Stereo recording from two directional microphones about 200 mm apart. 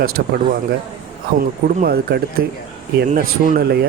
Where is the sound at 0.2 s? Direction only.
50° right (ahead or behind).